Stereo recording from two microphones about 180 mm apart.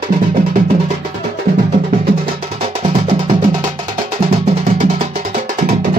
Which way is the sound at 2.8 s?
30° right (ahead or behind).